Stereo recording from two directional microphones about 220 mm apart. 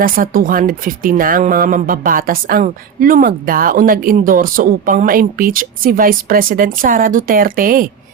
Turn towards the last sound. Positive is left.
turn(degrees=-40)  # may be behind; listen again after turning